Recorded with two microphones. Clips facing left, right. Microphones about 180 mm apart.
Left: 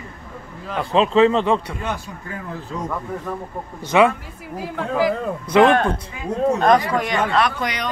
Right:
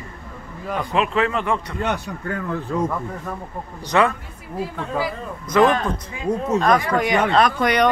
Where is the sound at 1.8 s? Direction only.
65° right (ahead or behind).